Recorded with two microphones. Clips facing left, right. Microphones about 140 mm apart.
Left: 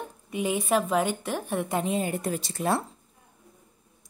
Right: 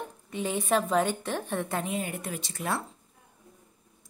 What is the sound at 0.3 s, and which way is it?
A woman's voice, 10° left (ahead or behind).